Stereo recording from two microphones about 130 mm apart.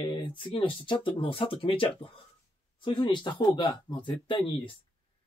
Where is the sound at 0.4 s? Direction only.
40° left (ahead or behind).